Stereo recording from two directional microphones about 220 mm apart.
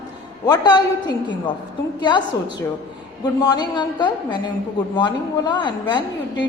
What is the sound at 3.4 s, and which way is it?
A woman's voice, 20° left (ahead or behind).